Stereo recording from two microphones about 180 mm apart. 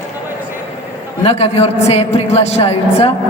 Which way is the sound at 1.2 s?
35° left (ahead or behind).